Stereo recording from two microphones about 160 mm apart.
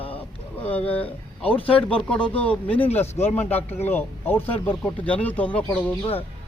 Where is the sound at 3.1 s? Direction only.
45° left (ahead or behind).